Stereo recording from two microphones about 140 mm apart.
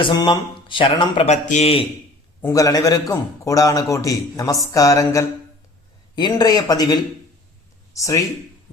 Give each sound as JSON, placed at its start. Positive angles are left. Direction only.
{"t": 0.0, "sound": "speech", "side_deg": 35}
{"t": 1.3, "sound": "a man's voice", "side_deg": 55}
{"t": 2.5, "sound": "a man's voice", "side_deg": 25}